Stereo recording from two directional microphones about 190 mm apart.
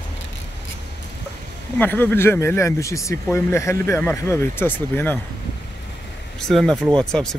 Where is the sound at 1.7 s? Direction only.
10° left (ahead or behind).